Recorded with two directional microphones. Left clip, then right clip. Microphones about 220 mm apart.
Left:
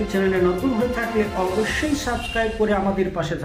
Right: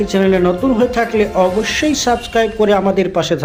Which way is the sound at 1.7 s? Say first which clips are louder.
Right 9 dB; 35° right (ahead or behind).